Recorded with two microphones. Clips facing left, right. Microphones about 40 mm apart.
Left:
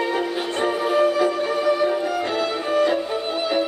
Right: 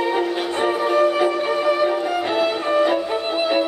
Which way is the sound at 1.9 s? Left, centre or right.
Right.